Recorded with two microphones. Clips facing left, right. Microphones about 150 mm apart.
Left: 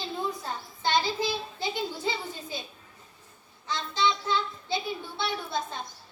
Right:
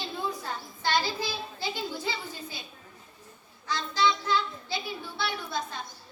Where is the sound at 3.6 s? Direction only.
20° left (ahead or behind).